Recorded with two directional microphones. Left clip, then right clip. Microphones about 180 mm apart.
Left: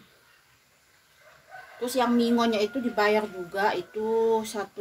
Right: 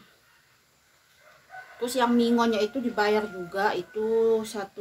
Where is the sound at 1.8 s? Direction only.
5° left (ahead or behind).